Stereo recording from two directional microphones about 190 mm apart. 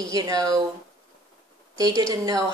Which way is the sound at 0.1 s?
20° right (ahead or behind).